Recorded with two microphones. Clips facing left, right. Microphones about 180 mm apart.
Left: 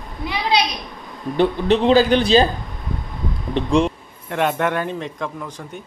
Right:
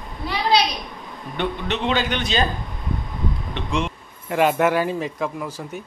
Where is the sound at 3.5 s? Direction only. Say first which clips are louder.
Left 10 dB; 35° left (ahead or behind).